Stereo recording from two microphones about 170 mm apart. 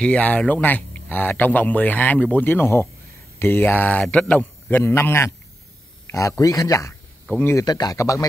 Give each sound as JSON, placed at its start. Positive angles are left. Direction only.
{"t": 0.0, "sound": "a man's voice", "side_deg": 10}